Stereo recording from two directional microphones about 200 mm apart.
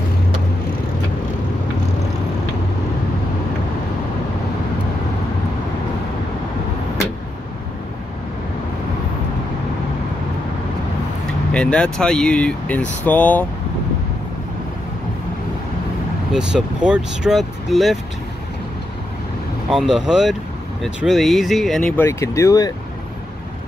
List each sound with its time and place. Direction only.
11.2 s speech: 5° left (ahead or behind)
16.3 s speech: 5° right (ahead or behind)
19.7 s speech: 5° right (ahead or behind); by 22.7 s 15° left (ahead or behind)